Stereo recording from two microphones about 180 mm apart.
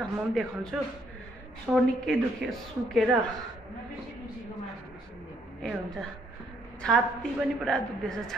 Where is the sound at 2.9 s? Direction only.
Centre (ahead or behind).